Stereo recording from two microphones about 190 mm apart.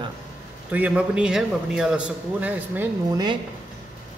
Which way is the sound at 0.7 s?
5° right (ahead or behind).